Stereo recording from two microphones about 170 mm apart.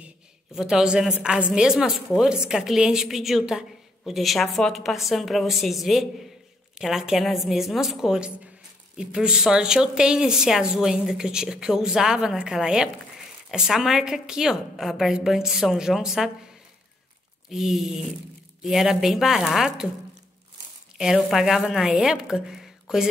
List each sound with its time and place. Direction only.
0.0 s a woman's voice: 5° right (ahead or behind)
17.5 s a woman's voice: 5° right (ahead or behind)
21.0 s a woman's voice: centre (ahead or behind)